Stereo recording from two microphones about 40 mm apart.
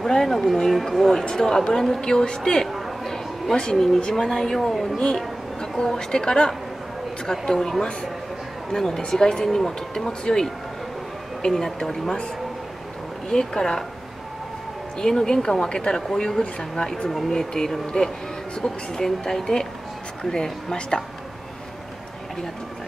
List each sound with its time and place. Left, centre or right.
0.0 s a woman's voice: centre
3.0 s a sound: centre
3.7 s a woman's voice: centre
4.9 s a woman's voice: left
13.3 s a woman's voice: centre
15.0 s a woman's voice: centre